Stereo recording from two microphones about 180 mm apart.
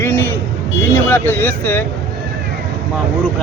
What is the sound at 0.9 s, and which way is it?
Speech, 10° left (ahead or behind).